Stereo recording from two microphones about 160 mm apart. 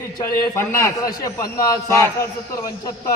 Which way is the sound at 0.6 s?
15° left (ahead or behind).